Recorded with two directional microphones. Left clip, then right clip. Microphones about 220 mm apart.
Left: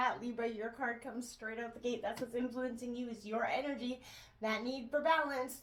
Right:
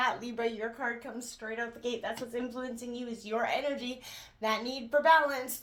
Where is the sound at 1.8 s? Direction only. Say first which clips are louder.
Right 3 dB; 30° right (ahead or behind).